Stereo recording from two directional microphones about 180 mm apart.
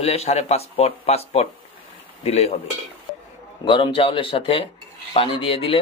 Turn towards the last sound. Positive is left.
turn(degrees=30)  # may be behind; listen again after turning